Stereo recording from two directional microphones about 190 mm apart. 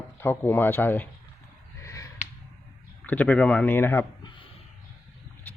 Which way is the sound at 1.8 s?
15° left (ahead or behind).